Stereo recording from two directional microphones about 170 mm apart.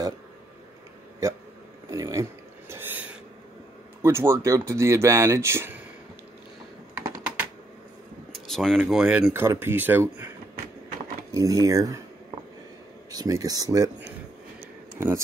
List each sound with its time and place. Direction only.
1.2 s speech: 20° right (ahead or behind)
1.9 s a sound: 20° right (ahead or behind)
4.0 s speech: 15° right (ahead or behind)
7.0 s typing: 10° right (ahead or behind)
8.3 s a sound: centre (ahead or behind)
8.9 s speech: 5° right (ahead or behind)
9.3 s speech: 15° right (ahead or behind)
11.3 s speech: 20° right (ahead or behind)
13.1 s speech: 20° right (ahead or behind)
15.0 s speech: 15° right (ahead or behind)